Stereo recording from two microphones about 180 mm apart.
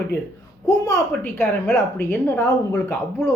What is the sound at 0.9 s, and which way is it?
Speech, 15° left (ahead or behind).